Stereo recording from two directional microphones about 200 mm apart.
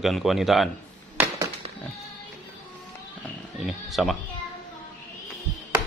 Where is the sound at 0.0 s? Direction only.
Centre (ahead or behind).